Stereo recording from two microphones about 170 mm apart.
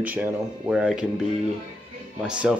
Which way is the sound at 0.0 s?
10° right (ahead or behind).